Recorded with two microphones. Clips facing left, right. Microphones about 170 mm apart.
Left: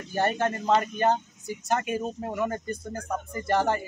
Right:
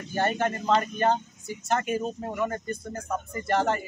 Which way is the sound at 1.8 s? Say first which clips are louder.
Right 1 dB; 15° left (ahead or behind).